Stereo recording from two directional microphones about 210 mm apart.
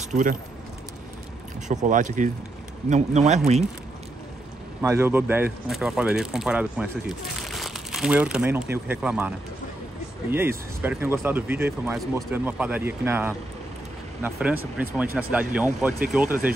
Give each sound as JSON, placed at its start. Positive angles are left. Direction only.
{"t": 0.0, "sound": "speech", "side_deg": -35}
{"t": 1.7, "sound": "speech", "side_deg": -35}
{"t": 4.8, "sound": "speech", "side_deg": -10}
{"t": 10.3, "sound": "speech", "side_deg": -10}